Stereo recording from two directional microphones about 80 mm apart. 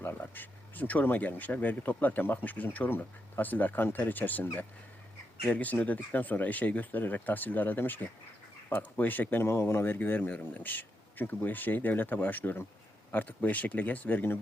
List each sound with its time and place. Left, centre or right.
0.0 s speech: left
5.5 s speech: centre